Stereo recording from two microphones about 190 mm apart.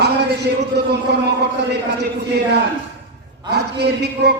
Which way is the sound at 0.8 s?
60° right (ahead or behind).